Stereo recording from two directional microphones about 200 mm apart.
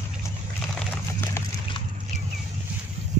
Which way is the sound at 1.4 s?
15° left (ahead or behind).